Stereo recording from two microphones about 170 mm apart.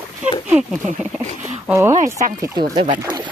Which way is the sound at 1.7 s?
15° right (ahead or behind).